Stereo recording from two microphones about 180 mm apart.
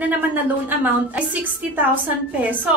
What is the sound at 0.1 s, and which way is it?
A woman's voice, 10° right (ahead or behind).